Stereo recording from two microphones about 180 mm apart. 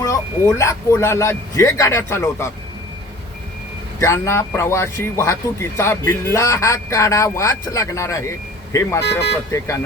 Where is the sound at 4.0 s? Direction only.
15° left (ahead or behind).